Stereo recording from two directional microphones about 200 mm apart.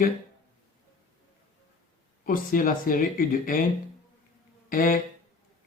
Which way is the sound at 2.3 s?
45° left (ahead or behind).